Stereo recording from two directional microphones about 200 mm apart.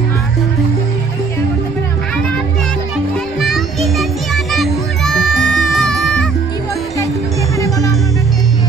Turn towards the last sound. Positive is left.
turn(degrees=15)  # may be behind; listen again after turning